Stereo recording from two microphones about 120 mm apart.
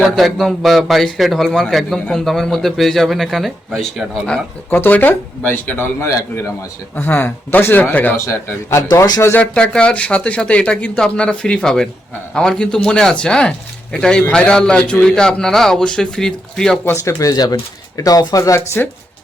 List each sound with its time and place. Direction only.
0.0 s a man's voice: centre (ahead or behind)
4.7 s a man's voice: 15° left (ahead or behind)
6.9 s a man's voice: 15° left (ahead or behind)
8.9 s speech: 35° left (ahead or behind)
9.2 s a man's voice: 15° left (ahead or behind)
16.8 s speech: 20° left (ahead or behind)